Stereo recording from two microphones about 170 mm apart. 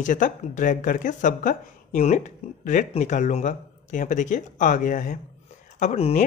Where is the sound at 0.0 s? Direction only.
50° left (ahead or behind).